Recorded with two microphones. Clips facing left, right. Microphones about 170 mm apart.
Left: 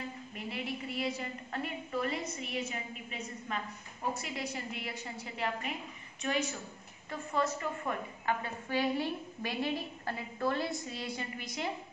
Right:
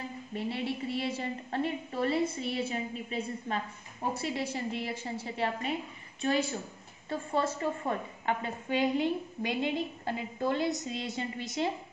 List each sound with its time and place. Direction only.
0.3 s a woman's voice: 30° right (ahead or behind)